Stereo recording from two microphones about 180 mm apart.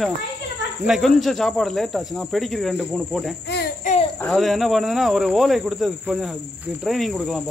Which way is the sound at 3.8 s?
45° left (ahead or behind).